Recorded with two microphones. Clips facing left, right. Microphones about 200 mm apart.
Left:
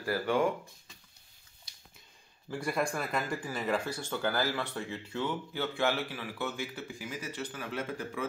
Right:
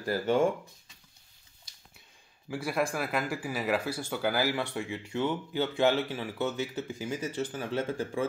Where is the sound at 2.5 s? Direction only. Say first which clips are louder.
Right 2 dB; 5° right (ahead or behind).